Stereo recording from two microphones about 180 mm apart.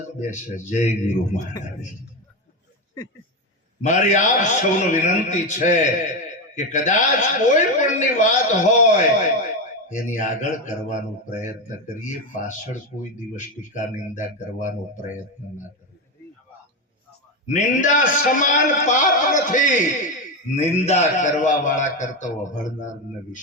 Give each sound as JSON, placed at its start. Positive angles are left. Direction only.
{"t": 0.2, "sound": "speech", "side_deg": 45}
{"t": 3.8, "sound": "speech", "side_deg": 40}
{"t": 12.5, "sound": "speech", "side_deg": 45}
{"t": 17.4, "sound": "a man's voice", "side_deg": 45}